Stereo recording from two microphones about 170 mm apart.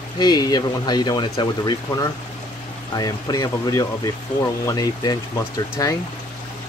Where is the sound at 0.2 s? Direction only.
25° left (ahead or behind).